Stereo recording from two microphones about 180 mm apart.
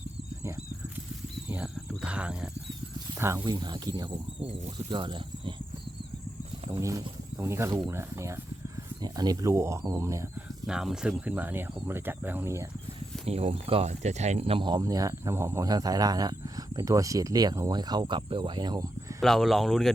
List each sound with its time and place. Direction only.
1.5 s cricket: 5° right (ahead or behind)
3.2 s speech: 15° right (ahead or behind)
6.7 s speech: 15° right (ahead or behind)
10.7 s speech: 5° right (ahead or behind)
13.2 s speech: 35° right (ahead or behind)
19.2 s speech: centre (ahead or behind)